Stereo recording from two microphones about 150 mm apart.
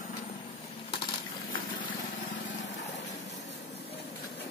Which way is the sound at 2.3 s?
50° left (ahead or behind).